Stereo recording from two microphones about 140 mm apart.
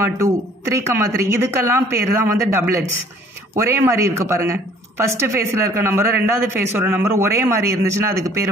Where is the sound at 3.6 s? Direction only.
20° right (ahead or behind).